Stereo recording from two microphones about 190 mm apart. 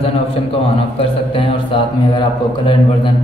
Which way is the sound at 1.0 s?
25° left (ahead or behind).